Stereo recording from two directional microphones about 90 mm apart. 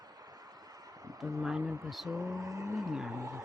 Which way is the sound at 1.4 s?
10° right (ahead or behind).